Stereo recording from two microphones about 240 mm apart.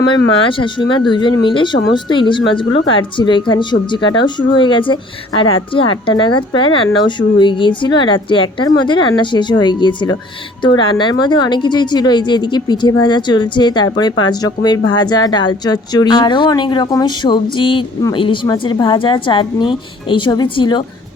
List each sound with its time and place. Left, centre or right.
0.4 s speech: left